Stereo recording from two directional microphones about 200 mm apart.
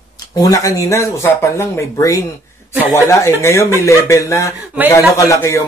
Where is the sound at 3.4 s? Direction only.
15° left (ahead or behind).